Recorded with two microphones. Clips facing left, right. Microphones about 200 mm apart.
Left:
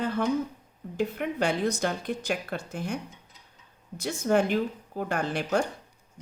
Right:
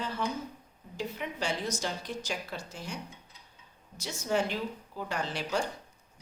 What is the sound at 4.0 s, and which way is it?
Speech, 55° left (ahead or behind).